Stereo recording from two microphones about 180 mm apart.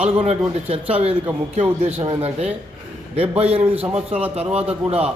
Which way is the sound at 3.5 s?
30° right (ahead or behind).